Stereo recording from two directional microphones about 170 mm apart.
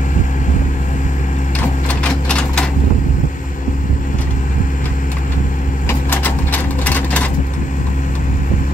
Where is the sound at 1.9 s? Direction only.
5° left (ahead or behind).